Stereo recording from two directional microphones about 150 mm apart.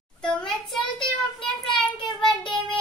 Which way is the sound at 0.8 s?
35° left (ahead or behind).